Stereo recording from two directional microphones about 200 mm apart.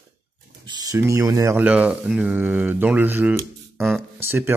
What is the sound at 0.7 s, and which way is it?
Speech, 20° right (ahead or behind).